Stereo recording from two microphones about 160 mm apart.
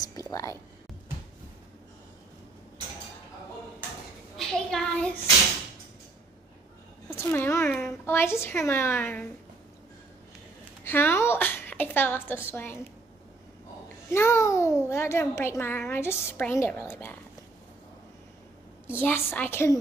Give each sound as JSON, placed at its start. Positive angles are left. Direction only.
{"t": 0.0, "sound": "speech", "side_deg": 20}
{"t": 4.4, "sound": "child singing", "side_deg": 5}
{"t": 7.2, "sound": "a sound", "side_deg": 15}
{"t": 7.8, "sound": "a woman's voice", "side_deg": 15}
{"t": 10.8, "sound": "a woman's voice", "side_deg": 15}
{"t": 14.1, "sound": "a child's voice", "side_deg": 15}
{"t": 18.9, "sound": "a child's voice", "side_deg": 15}